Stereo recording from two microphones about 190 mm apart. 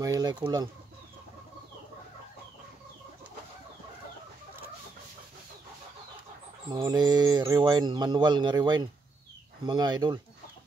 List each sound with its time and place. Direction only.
0.0 s speech: 20° right (ahead or behind)
6.7 s speech: 20° right (ahead or behind)